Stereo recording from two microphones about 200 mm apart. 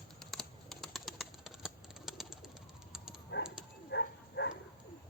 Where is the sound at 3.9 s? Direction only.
60° left (ahead or behind).